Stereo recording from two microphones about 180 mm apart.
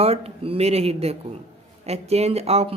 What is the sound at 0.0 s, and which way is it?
Speech, 35° right (ahead or behind).